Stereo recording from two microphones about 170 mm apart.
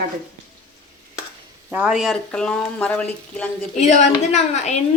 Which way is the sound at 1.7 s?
5° right (ahead or behind).